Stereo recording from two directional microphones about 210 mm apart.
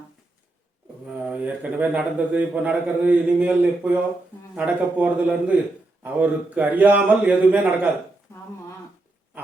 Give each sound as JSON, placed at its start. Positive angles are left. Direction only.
{"t": 1.0, "sound": "a man's voice", "side_deg": -5}